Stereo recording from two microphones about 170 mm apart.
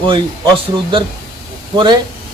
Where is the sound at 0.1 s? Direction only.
30° right (ahead or behind).